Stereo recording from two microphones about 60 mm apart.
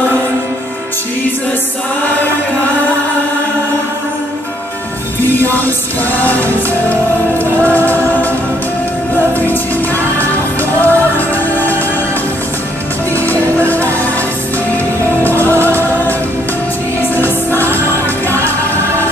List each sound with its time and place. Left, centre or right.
5.2 s music: left
10.8 s music: left
13.1 s music: left
15.2 s music: left